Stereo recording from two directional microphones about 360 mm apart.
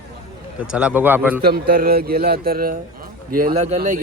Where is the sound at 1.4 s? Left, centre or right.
Right.